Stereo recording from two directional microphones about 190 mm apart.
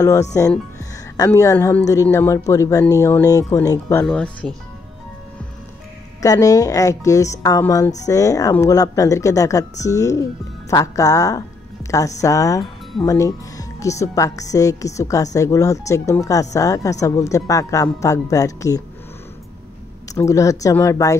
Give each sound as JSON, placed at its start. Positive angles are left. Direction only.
{"t": 0.0, "sound": "speech", "side_deg": 15}
{"t": 6.2, "sound": "speech", "side_deg": 20}
{"t": 20.2, "sound": "speech", "side_deg": 15}